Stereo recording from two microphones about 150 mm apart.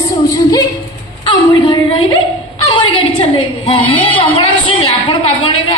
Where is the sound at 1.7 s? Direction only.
30° left (ahead or behind).